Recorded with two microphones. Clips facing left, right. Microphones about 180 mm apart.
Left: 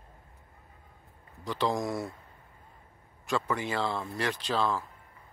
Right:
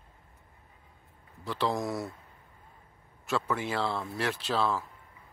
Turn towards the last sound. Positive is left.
turn(degrees=-5)  # may be behind; listen again after turning